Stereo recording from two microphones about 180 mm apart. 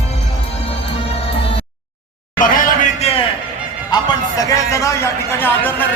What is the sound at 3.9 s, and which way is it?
Music, 20° left (ahead or behind).